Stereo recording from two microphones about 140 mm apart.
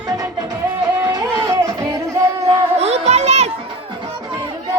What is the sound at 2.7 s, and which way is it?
Music, 50° right (ahead or behind).